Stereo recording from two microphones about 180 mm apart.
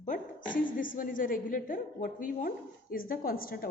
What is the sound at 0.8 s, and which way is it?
A woman's voice, 50° left (ahead or behind).